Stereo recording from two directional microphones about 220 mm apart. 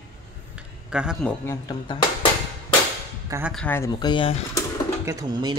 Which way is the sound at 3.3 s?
5° right (ahead or behind).